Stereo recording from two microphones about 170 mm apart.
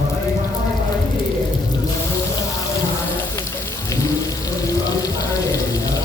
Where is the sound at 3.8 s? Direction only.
20° left (ahead or behind).